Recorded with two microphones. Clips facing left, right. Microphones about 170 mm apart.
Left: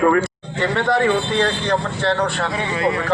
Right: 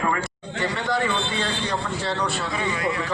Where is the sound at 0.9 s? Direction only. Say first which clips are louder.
Left 8 dB; 55° left (ahead or behind).